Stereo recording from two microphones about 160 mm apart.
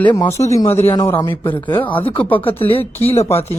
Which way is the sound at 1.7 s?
10° left (ahead or behind).